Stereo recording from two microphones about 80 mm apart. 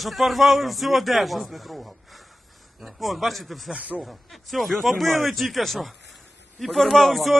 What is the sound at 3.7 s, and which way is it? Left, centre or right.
Speech, centre.